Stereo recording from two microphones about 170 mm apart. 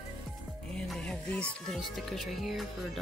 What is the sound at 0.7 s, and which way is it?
Speech, 5° left (ahead or behind).